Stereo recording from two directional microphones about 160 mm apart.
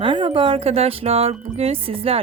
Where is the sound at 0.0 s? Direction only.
30° right (ahead or behind).